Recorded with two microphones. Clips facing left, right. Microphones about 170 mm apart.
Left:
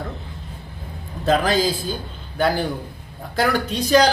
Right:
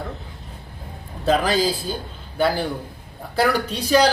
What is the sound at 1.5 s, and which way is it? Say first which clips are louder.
Speech: left 1 dB; 35° right (ahead or behind).